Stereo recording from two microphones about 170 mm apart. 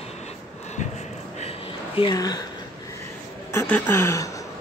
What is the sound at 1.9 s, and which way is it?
Speech, 25° left (ahead or behind).